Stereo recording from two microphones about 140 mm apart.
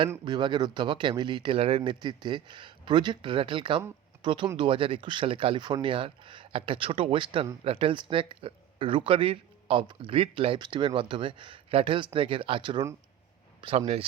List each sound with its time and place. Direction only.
0.3 s speech: 35° right (ahead or behind); by 14.0 s 50° right (ahead or behind)